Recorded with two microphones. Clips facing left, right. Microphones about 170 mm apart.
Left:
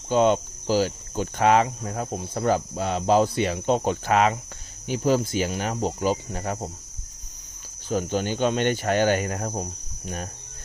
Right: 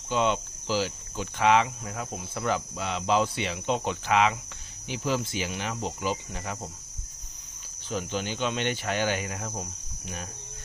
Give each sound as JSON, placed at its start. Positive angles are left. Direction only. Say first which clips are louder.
{"t": 0.1, "sound": "cricket", "louder": "left 6 dB", "side_deg": 45}
{"t": 4.9, "sound": "speech", "louder": "left 7 dB", "side_deg": 40}
{"t": 7.9, "sound": "speech", "louder": "left 6 dB", "side_deg": 45}